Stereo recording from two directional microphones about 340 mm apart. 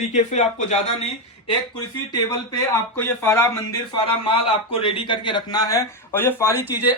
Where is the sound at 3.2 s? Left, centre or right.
Centre.